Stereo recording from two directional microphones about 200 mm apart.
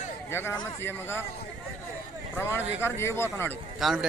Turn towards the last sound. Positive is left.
turn(degrees=0)  # may be behind; listen again after turning